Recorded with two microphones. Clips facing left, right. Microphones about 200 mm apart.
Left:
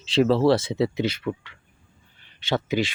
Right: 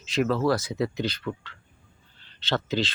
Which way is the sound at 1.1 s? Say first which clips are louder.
Left 4 dB; 10° left (ahead or behind).